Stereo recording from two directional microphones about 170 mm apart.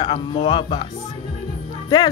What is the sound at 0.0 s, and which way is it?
Speech, 30° left (ahead or behind).